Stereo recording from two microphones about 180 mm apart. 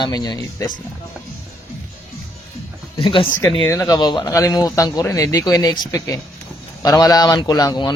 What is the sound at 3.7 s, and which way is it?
Speech, 20° left (ahead or behind).